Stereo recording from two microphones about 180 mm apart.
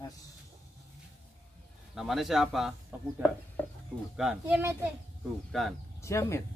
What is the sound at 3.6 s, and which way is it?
Chicken, 10° left (ahead or behind).